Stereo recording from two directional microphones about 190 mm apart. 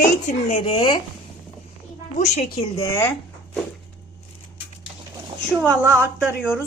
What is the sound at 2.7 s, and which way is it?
Speech, 15° left (ahead or behind).